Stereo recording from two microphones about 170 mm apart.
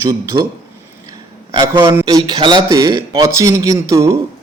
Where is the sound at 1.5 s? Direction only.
25° right (ahead or behind).